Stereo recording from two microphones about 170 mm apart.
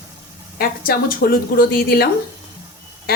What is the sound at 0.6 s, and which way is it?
A woman's voice, 60° left (ahead or behind).